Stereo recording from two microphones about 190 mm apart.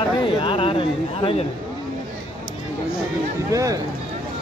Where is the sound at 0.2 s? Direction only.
25° left (ahead or behind).